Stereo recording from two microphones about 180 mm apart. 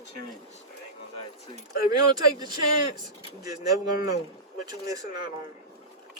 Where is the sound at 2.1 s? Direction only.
20° right (ahead or behind).